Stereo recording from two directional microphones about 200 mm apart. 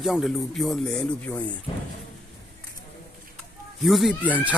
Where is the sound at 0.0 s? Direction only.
Centre (ahead or behind).